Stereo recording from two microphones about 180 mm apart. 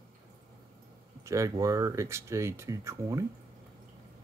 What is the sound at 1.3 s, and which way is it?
Speech, 15° right (ahead or behind).